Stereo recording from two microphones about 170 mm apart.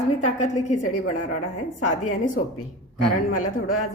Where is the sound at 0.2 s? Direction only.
45° left (ahead or behind).